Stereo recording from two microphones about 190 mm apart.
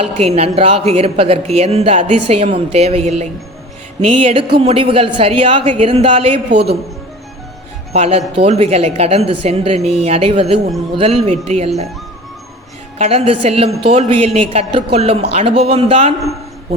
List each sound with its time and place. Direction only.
0.2 s a woman's voice: 30° right (ahead or behind)
6.5 s speech: 65° right (ahead or behind)
7.9 s speech: 30° right (ahead or behind)
13.0 s speech: 30° right (ahead or behind)